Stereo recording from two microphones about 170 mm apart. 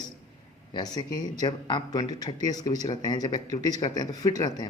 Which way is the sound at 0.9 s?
25° left (ahead or behind).